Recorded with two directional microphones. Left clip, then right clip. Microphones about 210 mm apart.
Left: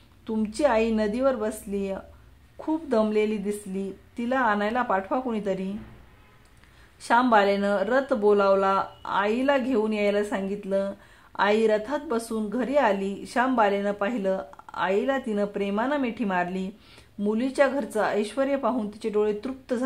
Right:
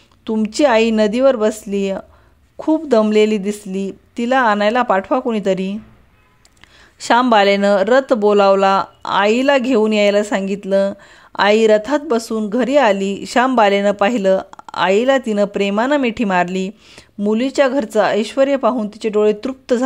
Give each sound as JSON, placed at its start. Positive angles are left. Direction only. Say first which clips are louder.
{"t": 0.2, "sound": "speech", "louder": "right 9 dB", "side_deg": -35}
{"t": 7.0, "sound": "speech", "louder": "right 8 dB", "side_deg": -40}